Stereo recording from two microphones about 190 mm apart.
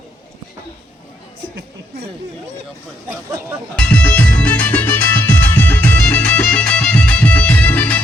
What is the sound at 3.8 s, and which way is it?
Music, 5° left (ahead or behind).